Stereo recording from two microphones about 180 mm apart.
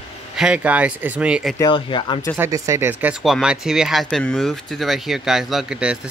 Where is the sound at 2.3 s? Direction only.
15° right (ahead or behind).